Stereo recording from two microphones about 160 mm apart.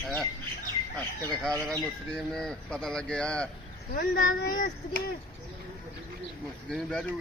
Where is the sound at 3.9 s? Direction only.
60° left (ahead or behind).